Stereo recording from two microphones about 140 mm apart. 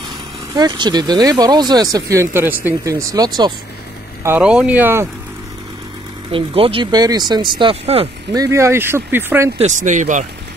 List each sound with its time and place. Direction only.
0.6 s speech: 30° right (ahead or behind)
4.4 s speech: 5° right (ahead or behind)
6.3 s speech: 40° right (ahead or behind)
8.3 s speech: 25° right (ahead or behind)
9.6 s speech: 60° right (ahead or behind)